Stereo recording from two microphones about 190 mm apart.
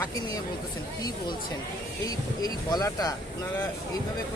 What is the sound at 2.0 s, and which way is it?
Speech, 20° left (ahead or behind).